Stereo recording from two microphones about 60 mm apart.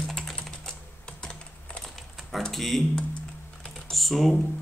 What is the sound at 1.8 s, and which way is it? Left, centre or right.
Typing, centre.